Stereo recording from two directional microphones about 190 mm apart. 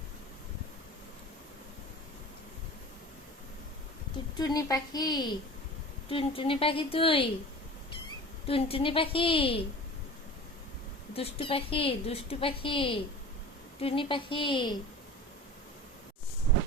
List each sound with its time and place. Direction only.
4.4 s a woman's voice: 20° left (ahead or behind)
8.4 s a woman's voice: 30° left (ahead or behind)
11.1 s a woman's voice: 30° left (ahead or behind)